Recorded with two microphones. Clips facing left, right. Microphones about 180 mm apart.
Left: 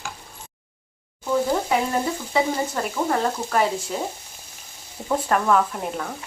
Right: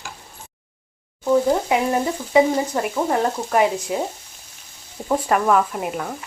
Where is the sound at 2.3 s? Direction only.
15° right (ahead or behind).